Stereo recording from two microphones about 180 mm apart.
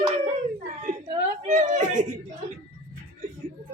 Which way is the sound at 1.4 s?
40° right (ahead or behind).